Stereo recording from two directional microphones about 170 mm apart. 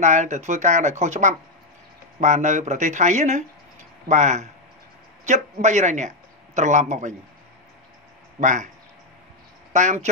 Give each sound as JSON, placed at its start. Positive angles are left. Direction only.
{"t": 0.0, "sound": "a man's voice", "side_deg": -45}
{"t": 8.4, "sound": "speech", "side_deg": -45}
{"t": 9.7, "sound": "speech", "side_deg": -45}